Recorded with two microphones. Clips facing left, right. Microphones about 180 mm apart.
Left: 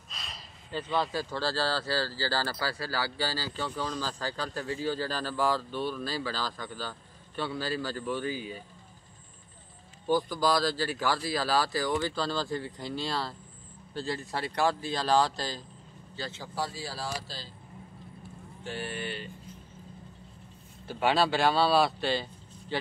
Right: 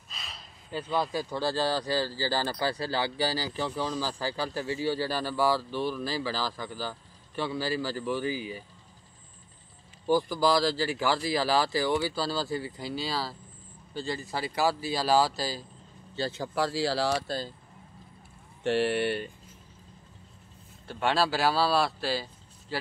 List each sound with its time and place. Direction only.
0.1 s a man's voice: centre (ahead or behind)
10.0 s a man's voice: 10° right (ahead or behind)
16.2 s speech: 35° right (ahead or behind)
16.5 s speech: 85° right
18.6 s speech: 75° right (ahead or behind)
20.8 s speech: centre (ahead or behind)